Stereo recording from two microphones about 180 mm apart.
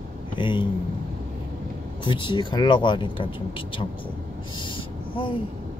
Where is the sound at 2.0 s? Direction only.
25° left (ahead or behind).